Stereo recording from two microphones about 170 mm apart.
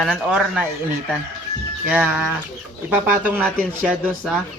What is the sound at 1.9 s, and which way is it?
Speech, 10° right (ahead or behind).